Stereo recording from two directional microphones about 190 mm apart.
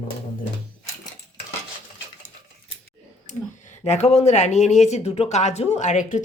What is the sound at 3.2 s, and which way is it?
A woman's voice, 40° left (ahead or behind).